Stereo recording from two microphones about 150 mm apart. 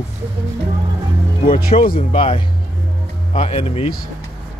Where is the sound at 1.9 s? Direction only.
35° left (ahead or behind).